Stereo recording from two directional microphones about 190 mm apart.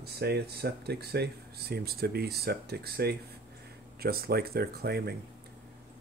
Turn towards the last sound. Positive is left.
turn(degrees=-55)  # may be behind; listen again after turning